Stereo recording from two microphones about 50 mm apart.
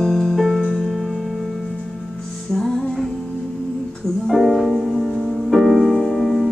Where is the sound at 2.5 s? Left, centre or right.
Centre.